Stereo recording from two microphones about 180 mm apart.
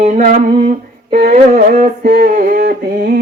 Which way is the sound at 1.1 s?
45° right (ahead or behind).